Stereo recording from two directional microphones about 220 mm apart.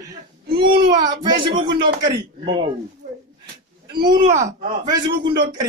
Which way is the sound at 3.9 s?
20° right (ahead or behind).